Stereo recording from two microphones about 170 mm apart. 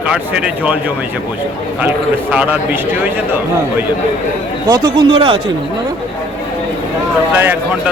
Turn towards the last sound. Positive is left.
turn(degrees=-10)  # may be behind; listen again after turning